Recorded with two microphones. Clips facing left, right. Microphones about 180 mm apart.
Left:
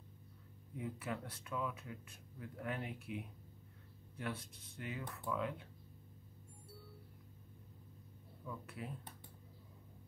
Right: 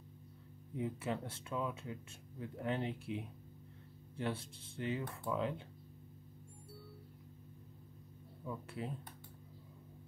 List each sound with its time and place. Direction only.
0.7 s speech: 25° right (ahead or behind)
8.5 s speech: 25° right (ahead or behind)